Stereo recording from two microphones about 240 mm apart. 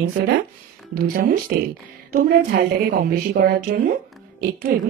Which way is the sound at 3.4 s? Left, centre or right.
Right.